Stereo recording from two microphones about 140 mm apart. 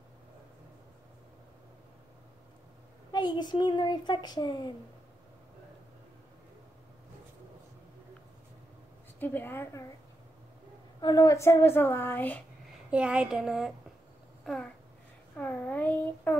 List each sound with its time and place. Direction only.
3.1 s speech: 30° left (ahead or behind)
9.2 s a woman's voice: 15° left (ahead or behind)
11.0 s a woman's voice: 25° left (ahead or behind)
12.9 s a woman's voice: 5° right (ahead or behind)
14.4 s a sound: 5° left (ahead or behind)